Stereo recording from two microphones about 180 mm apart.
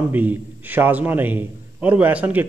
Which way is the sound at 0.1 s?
10° right (ahead or behind).